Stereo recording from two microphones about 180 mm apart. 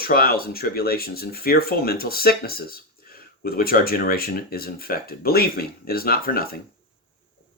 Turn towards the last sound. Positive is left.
turn(degrees=55)  # may be behind; listen again after turning